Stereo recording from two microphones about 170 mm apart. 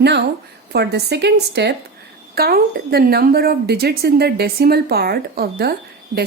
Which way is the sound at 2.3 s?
65° right (ahead or behind).